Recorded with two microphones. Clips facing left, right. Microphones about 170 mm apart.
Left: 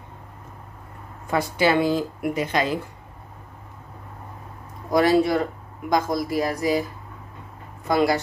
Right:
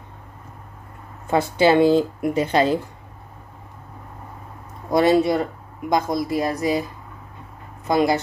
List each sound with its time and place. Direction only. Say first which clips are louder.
1.2 s speech: right 4 dB; 25° right (ahead or behind)
4.9 s speech: right 2 dB; 25° right (ahead or behind)
7.9 s speech: right 2 dB; 20° right (ahead or behind)